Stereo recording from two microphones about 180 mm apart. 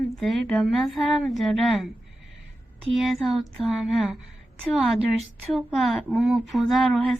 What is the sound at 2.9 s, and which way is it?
Speech, centre (ahead or behind).